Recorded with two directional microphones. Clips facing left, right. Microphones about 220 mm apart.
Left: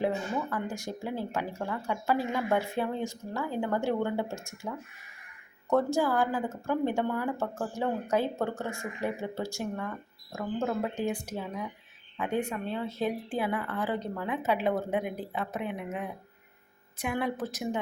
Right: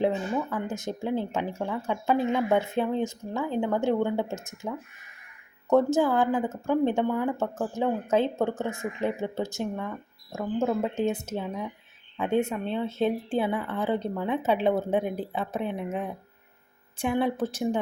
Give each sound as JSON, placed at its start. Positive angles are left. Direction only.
{"t": 0.7, "sound": "speech", "side_deg": -20}
{"t": 5.7, "sound": "speech", "side_deg": -20}